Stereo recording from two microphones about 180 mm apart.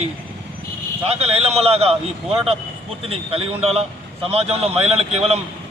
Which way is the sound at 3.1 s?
30° right (ahead or behind).